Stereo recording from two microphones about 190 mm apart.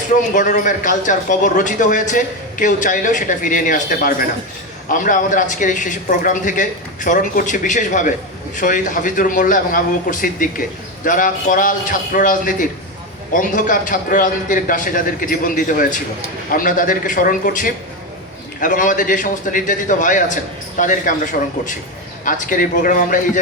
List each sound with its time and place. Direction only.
0.1 s speech: 40° left (ahead or behind)
22.2 s speech: 45° left (ahead or behind)